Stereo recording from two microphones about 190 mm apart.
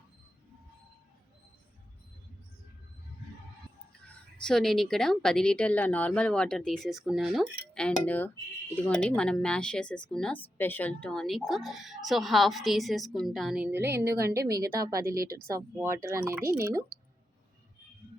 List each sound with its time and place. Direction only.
4.4 s a woman's voice: centre (ahead or behind); by 16.8 s 15° right (ahead or behind)